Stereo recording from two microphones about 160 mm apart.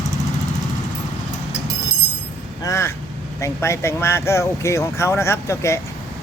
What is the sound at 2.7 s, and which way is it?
Speech, 15° left (ahead or behind).